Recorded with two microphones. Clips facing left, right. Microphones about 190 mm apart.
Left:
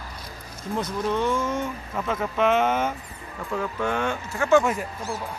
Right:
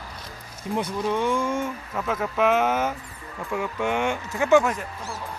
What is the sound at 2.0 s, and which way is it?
Speech, centre (ahead or behind).